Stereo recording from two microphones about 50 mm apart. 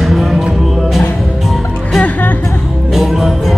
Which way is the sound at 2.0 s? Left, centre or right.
Left.